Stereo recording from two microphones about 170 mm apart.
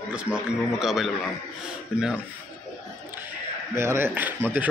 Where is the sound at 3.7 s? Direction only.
15° right (ahead or behind).